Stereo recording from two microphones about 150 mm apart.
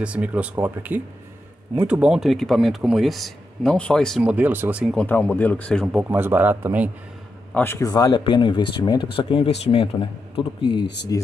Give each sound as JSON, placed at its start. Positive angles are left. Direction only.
{"t": 0.0, "sound": "speech", "side_deg": -10}
{"t": 4.2, "sound": "speech", "side_deg": -10}
{"t": 4.9, "sound": "speech", "side_deg": 10}
{"t": 6.0, "sound": "speech", "side_deg": -15}
{"t": 7.5, "sound": "speech", "side_deg": 15}
{"t": 11.1, "sound": "speech", "side_deg": 25}